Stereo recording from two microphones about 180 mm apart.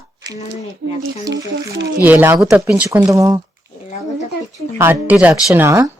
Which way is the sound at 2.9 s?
15° right (ahead or behind).